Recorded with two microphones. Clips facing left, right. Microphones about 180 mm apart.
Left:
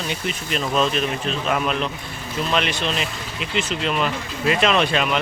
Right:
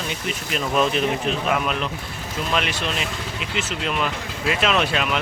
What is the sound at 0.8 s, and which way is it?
Speech, 15° right (ahead or behind).